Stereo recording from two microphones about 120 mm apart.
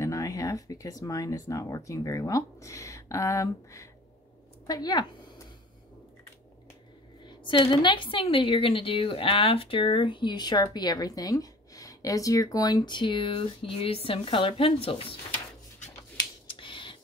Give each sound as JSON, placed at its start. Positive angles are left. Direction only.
{"t": 0.0, "sound": "a woman's voice", "side_deg": 25}
{"t": 7.2, "sound": "a woman's voice", "side_deg": 40}
{"t": 16.4, "sound": "computer keyboard", "side_deg": 45}